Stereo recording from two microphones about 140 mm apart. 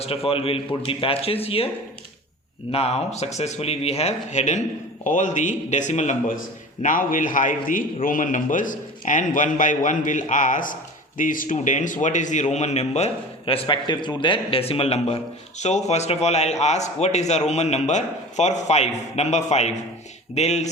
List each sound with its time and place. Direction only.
0.0 s a man's voice: 45° left (ahead or behind)
2.7 s a man's voice: 45° left (ahead or behind)
6.8 s a man's voice: 70° left (ahead or behind); by 20.7 s 50° left (ahead or behind)